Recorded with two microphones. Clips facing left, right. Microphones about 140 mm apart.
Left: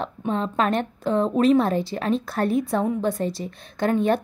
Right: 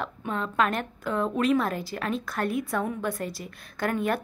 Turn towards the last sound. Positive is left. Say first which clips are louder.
# left 6 dB
turn(degrees=25)  # may be behind; listen again after turning